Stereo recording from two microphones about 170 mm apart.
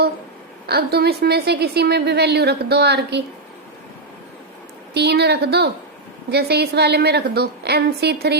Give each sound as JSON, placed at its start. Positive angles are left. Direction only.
{"t": 0.7, "sound": "a woman's voice", "side_deg": -70}
{"t": 4.9, "sound": "a woman's voice", "side_deg": -75}